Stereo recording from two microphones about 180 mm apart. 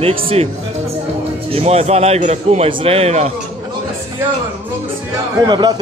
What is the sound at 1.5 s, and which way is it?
A man's voice, 35° right (ahead or behind).